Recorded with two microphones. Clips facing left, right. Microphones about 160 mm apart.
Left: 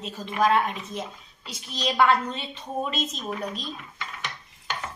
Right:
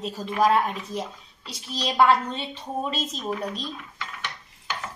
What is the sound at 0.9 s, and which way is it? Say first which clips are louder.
Speech: right 3 dB; 35° right (ahead or behind).